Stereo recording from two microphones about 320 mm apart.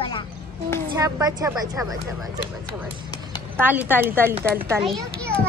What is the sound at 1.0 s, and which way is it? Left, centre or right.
Speech, centre.